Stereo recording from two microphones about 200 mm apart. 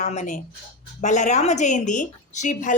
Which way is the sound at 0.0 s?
35° left (ahead or behind).